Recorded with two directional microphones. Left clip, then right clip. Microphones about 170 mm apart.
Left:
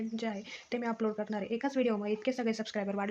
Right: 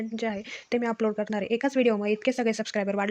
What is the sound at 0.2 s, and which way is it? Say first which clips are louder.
Speech: right 7 dB; 35° right (ahead or behind).